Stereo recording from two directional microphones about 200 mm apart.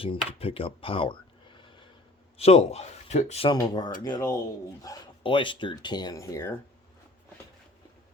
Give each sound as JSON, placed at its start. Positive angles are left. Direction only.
{"t": 0.0, "sound": "speech", "side_deg": 30}
{"t": 3.5, "sound": "speech", "side_deg": 20}